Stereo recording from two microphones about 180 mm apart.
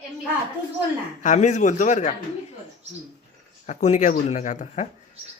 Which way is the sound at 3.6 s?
40° left (ahead or behind).